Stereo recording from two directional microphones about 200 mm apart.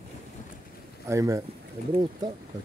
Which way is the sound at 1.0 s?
15° right (ahead or behind).